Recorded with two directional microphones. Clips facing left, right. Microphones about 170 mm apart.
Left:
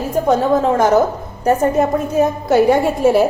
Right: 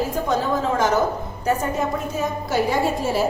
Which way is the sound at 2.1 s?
55° left (ahead or behind).